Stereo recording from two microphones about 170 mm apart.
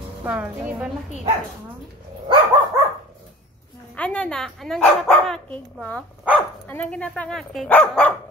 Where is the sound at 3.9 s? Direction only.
5° left (ahead or behind).